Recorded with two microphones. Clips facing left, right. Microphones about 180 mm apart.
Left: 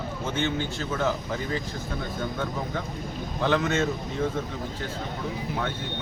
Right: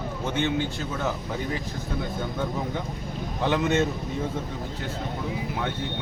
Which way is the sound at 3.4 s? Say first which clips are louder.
Right 1 dB; 15° right (ahead or behind).